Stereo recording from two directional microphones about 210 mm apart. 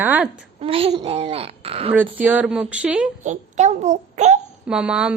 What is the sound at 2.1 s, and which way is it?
Speech, 10° right (ahead or behind).